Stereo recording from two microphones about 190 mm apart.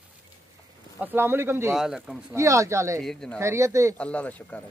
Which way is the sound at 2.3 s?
15° right (ahead or behind).